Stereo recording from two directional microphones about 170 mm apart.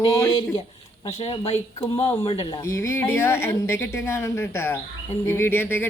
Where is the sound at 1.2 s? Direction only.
35° left (ahead or behind).